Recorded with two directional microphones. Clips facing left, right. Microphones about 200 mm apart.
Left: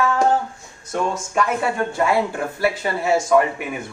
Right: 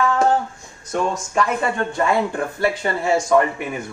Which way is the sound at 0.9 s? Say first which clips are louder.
Right 1 dB; 5° left (ahead or behind).